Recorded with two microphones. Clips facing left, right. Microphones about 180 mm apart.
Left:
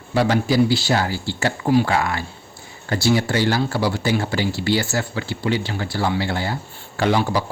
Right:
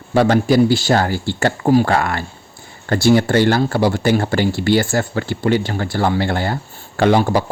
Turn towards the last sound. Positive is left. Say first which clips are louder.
# right 5 dB
turn(degrees=-50)  # may be behind; listen again after turning